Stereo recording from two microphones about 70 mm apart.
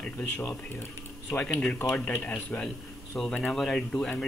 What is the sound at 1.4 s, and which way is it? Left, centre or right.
Speech, centre.